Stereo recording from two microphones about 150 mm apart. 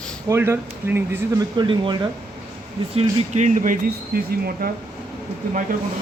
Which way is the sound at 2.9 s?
45° right (ahead or behind).